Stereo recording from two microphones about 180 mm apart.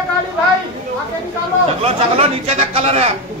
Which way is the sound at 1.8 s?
35° right (ahead or behind).